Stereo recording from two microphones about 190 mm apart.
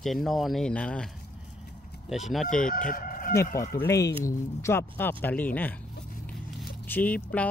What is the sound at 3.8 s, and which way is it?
Speech, 15° left (ahead or behind).